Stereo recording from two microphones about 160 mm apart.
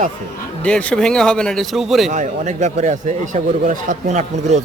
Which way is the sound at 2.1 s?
50° right (ahead or behind).